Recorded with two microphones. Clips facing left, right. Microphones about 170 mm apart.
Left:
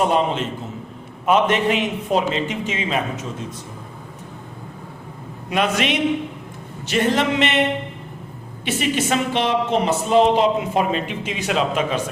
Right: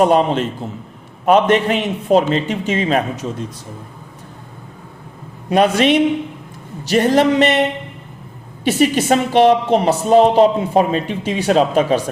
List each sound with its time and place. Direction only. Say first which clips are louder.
0.0 s a man's voice: right 5 dB; 45° right (ahead or behind)
5.5 s a woman's voice: right 7 dB; 35° right (ahead or behind)
8.6 s a woman's voice: right 7 dB; 40° right (ahead or behind)